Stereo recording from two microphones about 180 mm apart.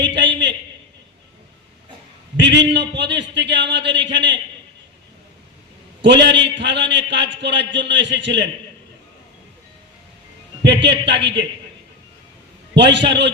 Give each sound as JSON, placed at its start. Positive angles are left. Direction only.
{"t": 0.0, "sound": "a sound", "side_deg": -80}
{"t": 2.4, "sound": "a man's voice", "side_deg": -75}
{"t": 6.0, "sound": "a man's voice", "side_deg": -80}
{"t": 10.8, "sound": "a man's voice", "side_deg": -75}
{"t": 12.7, "sound": "a man's voice", "side_deg": -75}